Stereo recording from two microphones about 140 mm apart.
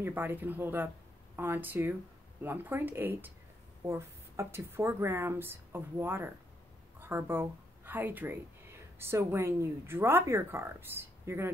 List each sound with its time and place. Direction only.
0.0 s a woman's voice: 15° right (ahead or behind)